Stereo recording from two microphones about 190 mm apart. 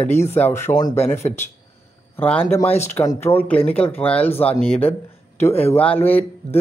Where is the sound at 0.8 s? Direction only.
35° left (ahead or behind).